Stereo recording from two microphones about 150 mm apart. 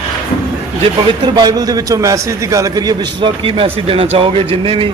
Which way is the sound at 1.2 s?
25° right (ahead or behind).